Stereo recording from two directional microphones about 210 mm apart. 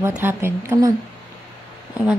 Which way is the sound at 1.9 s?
5° right (ahead or behind).